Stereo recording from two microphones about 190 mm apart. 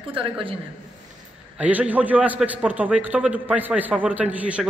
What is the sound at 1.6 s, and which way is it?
A man's voice, 10° right (ahead or behind).